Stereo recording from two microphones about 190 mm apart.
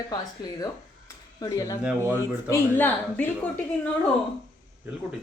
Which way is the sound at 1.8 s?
10° right (ahead or behind).